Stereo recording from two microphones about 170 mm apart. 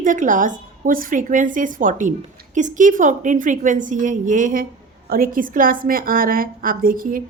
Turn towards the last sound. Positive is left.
turn(degrees=-55)  # may be behind; listen again after turning